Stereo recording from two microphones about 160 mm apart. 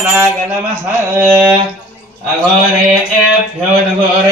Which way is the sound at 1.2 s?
20° right (ahead or behind).